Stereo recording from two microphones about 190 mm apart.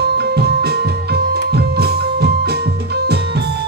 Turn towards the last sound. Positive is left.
turn(degrees=-60)  # may be behind; listen again after turning